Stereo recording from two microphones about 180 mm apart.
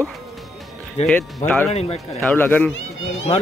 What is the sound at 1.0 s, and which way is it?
Speech, 5° left (ahead or behind).